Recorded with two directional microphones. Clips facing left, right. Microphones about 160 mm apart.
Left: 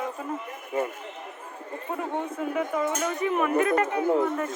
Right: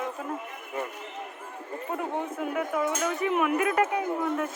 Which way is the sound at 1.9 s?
5° right (ahead or behind).